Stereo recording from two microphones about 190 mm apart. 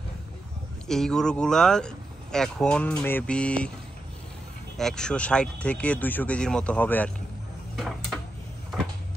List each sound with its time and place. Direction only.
0.8 s speech: centre (ahead or behind)
4.7 s speech: 5° left (ahead or behind)
7.7 s a sound: centre (ahead or behind)